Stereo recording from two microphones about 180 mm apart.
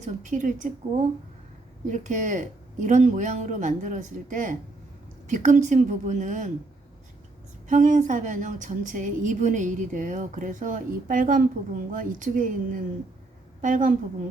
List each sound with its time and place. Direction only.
0.0 s a woman's voice: 45° right (ahead or behind)
1.9 s a woman's voice: 45° right (ahead or behind)
7.7 s a woman's voice: 45° right (ahead or behind)